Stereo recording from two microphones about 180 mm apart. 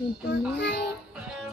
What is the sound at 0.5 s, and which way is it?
Speech, 75° left (ahead or behind).